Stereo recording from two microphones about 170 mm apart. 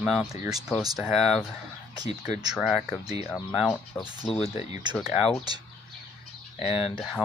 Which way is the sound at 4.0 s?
5° left (ahead or behind).